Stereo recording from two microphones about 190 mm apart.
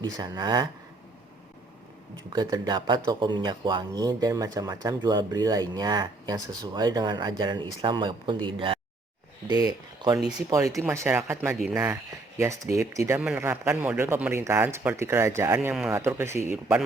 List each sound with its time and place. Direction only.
0.0 s speech: 20° right (ahead or behind)
2.3 s speech: 20° right (ahead or behind)
10.2 s speech: 5° right (ahead or behind)
10.5 s a man's voice: 15° right (ahead or behind)
15.7 s speech: centre (ahead or behind)
16.0 s a man's voice: 10° right (ahead or behind)